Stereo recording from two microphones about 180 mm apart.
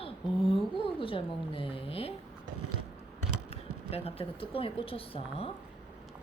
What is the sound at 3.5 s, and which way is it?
Speech, 35° left (ahead or behind).